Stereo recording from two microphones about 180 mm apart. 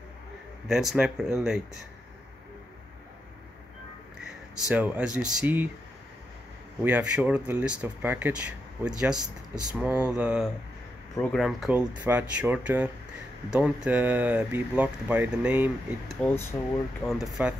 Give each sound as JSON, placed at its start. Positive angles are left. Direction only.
{"t": 0.7, "sound": "speech", "side_deg": 0}
{"t": 4.6, "sound": "speech", "side_deg": -5}
{"t": 6.8, "sound": "speech", "side_deg": -5}
{"t": 9.2, "sound": "speech", "side_deg": -20}
{"t": 9.8, "sound": "speech", "side_deg": -5}
{"t": 16.1, "sound": "speech", "side_deg": 5}